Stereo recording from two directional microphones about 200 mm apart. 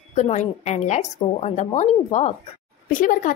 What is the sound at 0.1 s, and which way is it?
Speech, 35° left (ahead or behind).